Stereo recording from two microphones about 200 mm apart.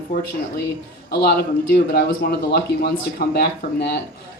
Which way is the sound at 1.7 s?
50° left (ahead or behind).